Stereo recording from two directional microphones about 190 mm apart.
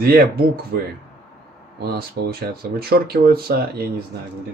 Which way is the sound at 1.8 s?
55° right (ahead or behind).